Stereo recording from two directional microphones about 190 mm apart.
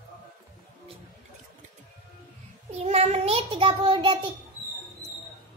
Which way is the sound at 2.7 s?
35° right (ahead or behind).